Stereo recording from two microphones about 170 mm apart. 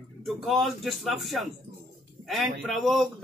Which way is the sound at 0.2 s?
Centre (ahead or behind).